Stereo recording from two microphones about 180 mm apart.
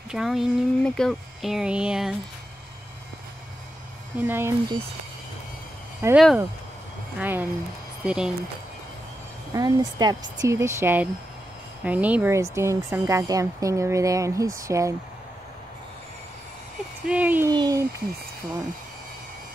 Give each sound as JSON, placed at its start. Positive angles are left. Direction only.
{"t": 0.1, "sound": "speech", "side_deg": 0}
{"t": 4.2, "sound": "speech", "side_deg": -10}
{"t": 6.1, "sound": "speech", "side_deg": 0}
{"t": 9.5, "sound": "speech", "side_deg": -20}
{"t": 17.1, "sound": "speech", "side_deg": -10}
{"t": 17.5, "sound": "speech", "side_deg": -20}